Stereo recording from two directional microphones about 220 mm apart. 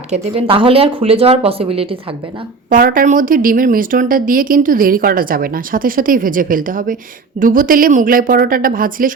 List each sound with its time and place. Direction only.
0.1 s speech: 25° right (ahead or behind)
2.6 s speech: 40° right (ahead or behind)